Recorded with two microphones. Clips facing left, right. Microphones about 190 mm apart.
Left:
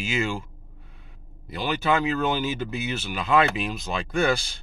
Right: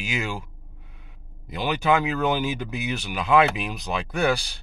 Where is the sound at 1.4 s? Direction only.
15° right (ahead or behind).